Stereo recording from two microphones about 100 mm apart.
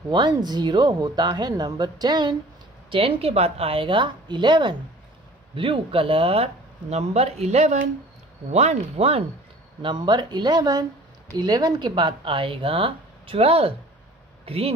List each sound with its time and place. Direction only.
0.1 s speech: 45° right (ahead or behind)
2.9 s speech: 70° right (ahead or behind); by 4.7 s 50° right (ahead or behind)
5.5 s speech: 65° right (ahead or behind); by 9.2 s 90° right
9.8 s speech: 50° right (ahead or behind); by 14.7 s 75° right (ahead or behind)